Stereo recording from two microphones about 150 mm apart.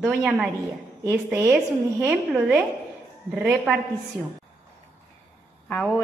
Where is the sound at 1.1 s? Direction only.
15° right (ahead or behind).